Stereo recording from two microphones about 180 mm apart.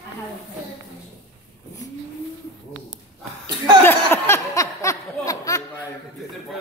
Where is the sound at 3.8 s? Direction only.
10° left (ahead or behind).